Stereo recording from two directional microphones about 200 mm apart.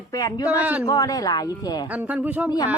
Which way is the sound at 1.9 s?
10° right (ahead or behind).